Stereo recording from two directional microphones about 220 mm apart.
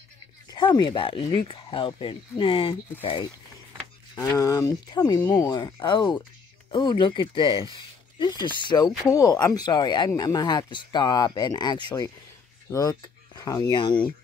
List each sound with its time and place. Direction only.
0.5 s speech: 20° left (ahead or behind)